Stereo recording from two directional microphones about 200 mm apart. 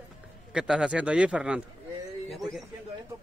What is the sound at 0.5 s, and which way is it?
A man's voice, 5° right (ahead or behind).